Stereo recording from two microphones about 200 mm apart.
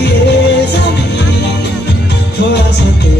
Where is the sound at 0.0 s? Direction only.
55° left (ahead or behind).